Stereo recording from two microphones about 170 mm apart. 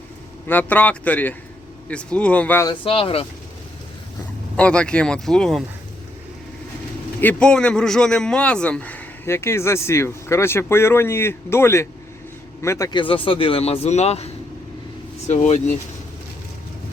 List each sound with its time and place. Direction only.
0.4 s speech: 10° left (ahead or behind)
2.6 s speech: 30° left (ahead or behind)
4.5 s speech: 5° left (ahead or behind)
7.2 s speech: 10° left (ahead or behind); by 15.6 s 40° left (ahead or behind)